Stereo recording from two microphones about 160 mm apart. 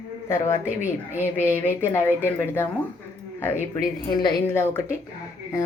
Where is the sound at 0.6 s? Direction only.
10° right (ahead or behind).